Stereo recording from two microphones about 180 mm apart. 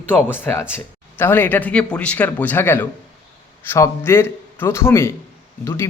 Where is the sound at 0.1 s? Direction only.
10° left (ahead or behind).